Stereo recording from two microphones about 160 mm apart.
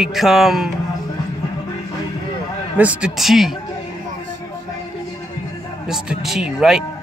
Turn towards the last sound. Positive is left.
turn(degrees=-5)  # may be behind; listen again after turning